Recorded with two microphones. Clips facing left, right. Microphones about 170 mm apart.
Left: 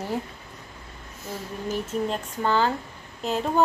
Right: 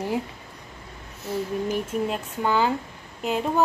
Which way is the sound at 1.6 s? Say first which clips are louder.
Right 1 dB; 10° right (ahead or behind).